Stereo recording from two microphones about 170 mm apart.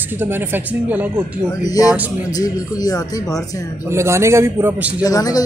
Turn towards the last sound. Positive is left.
turn(degrees=20)  # may be behind; listen again after turning